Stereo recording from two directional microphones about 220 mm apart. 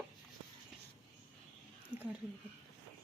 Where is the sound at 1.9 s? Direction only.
5° right (ahead or behind).